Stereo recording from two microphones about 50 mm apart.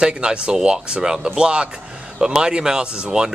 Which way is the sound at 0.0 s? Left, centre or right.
Centre.